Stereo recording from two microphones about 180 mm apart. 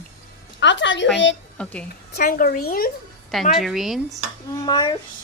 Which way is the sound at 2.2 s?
55° left (ahead or behind).